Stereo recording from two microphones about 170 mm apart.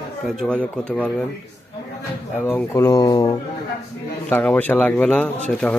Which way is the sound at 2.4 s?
10° left (ahead or behind).